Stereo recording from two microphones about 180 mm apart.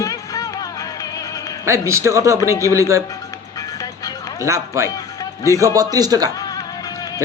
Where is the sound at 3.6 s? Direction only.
20° left (ahead or behind).